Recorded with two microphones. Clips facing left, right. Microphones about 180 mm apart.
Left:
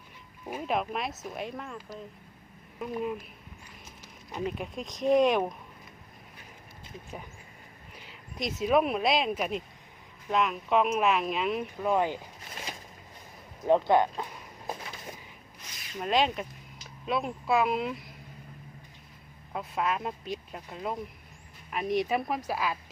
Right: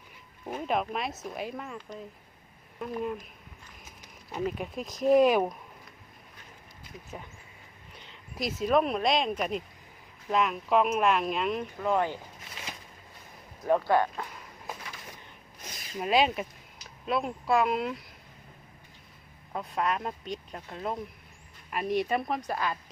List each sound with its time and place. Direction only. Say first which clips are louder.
0.5 s speech: right 1 dB; centre (ahead or behind)
4.3 s speech: right 1 dB; centre (ahead or behind)
8.4 s speech: even; centre (ahead or behind)
11.9 s speech: left 1 dB; 15° left (ahead or behind)
13.7 s speech: left 2 dB; 20° left (ahead or behind)
16.0 s speech: right 2 dB; 5° right (ahead or behind)
19.5 s speech: right 1 dB; centre (ahead or behind)